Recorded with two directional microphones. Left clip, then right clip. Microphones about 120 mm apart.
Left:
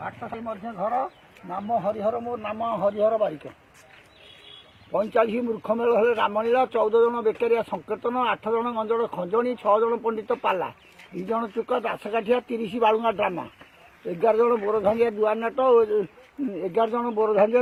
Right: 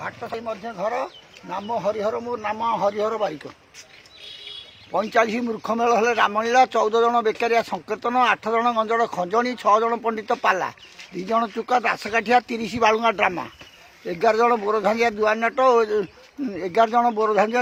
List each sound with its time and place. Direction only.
0.7 s speech: 80° right
1.5 s speech: 40° right (ahead or behind)
4.9 s speech: 40° right (ahead or behind)
11.3 s speech: 45° right (ahead or behind); by 17.3 s 25° right (ahead or behind)
17.3 s speech: 15° right (ahead or behind)